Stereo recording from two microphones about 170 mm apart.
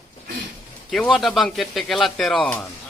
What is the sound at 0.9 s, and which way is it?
Speech, centre (ahead or behind).